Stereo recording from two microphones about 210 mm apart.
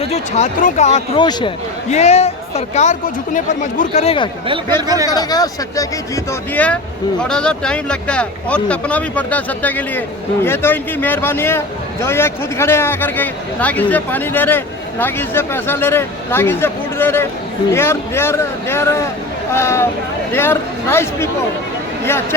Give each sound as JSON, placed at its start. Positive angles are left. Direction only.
{"t": 0.0, "sound": "speech", "side_deg": 30}
{"t": 1.2, "sound": "speech", "side_deg": 20}
{"t": 1.9, "sound": "a man's voice", "side_deg": 30}